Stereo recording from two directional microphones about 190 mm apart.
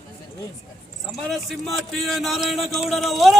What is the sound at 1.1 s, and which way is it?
Speech, centre (ahead or behind).